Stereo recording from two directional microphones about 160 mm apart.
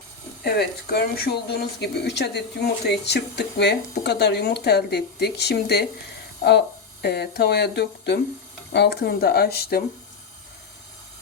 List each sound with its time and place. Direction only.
0.4 s speech: 80° left
7.0 s speech: 90° left